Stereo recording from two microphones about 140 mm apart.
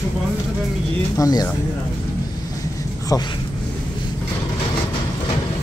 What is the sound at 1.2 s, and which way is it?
Speech, 25° left (ahead or behind).